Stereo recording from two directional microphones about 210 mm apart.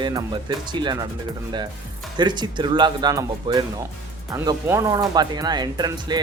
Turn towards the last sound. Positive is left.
turn(degrees=-20)  # may be behind; listen again after turning